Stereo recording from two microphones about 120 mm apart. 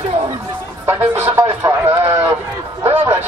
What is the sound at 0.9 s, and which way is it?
Speech, 20° right (ahead or behind).